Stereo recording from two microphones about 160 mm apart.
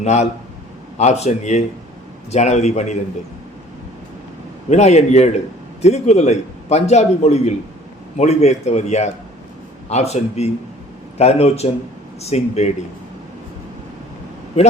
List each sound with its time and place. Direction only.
0.0 s a man's voice: 45° left (ahead or behind)
4.7 s a man's voice: 45° left (ahead or behind)